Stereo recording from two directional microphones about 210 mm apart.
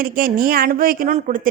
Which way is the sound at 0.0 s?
40° right (ahead or behind).